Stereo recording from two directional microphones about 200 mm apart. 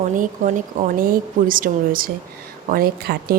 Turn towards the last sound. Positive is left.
turn(degrees=-50)  # may be behind; listen again after turning